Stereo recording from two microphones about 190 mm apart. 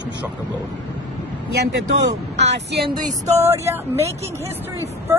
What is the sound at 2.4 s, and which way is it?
Speech, 65° right (ahead or behind).